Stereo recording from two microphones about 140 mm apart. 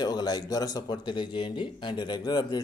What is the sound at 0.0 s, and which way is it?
Speech, 30° left (ahead or behind).